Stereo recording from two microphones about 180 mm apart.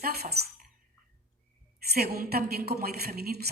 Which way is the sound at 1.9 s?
60° right (ahead or behind).